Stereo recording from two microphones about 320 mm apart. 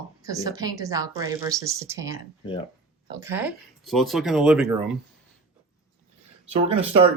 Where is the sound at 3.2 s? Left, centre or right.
Centre.